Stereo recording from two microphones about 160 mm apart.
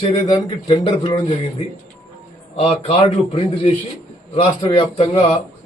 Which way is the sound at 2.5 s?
40° left (ahead or behind).